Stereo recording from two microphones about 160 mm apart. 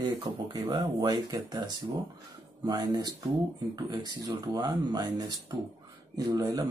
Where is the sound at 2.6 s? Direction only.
25° right (ahead or behind).